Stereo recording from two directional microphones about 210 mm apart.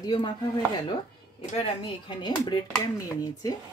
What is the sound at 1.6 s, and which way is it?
Speech, 20° left (ahead or behind).